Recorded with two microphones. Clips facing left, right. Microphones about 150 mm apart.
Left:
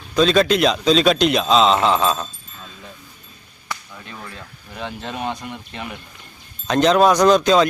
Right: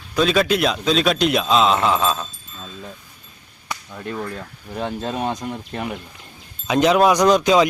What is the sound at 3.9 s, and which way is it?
Speech, 45° right (ahead or behind).